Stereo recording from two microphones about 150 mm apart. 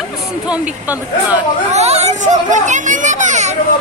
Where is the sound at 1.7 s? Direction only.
45° right (ahead or behind).